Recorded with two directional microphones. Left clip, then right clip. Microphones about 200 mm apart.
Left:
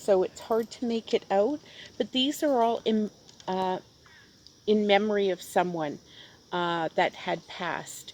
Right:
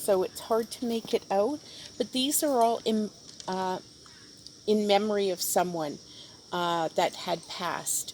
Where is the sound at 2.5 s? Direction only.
45° left (ahead or behind).